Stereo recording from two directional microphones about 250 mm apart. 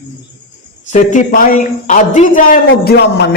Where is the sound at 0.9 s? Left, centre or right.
Left.